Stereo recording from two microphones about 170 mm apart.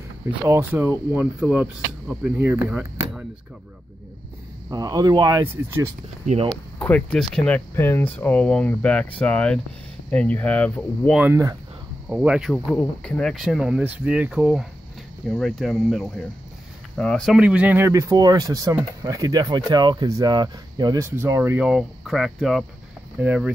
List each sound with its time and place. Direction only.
0.3 s speech: 10° right (ahead or behind)
2.7 s a sound: 10° right (ahead or behind)
4.6 s speech: 25° right (ahead or behind)
6.2 s speech: 35° right (ahead or behind)
6.5 s speech: 5° left (ahead or behind)
11.1 s speech: 15° right (ahead or behind)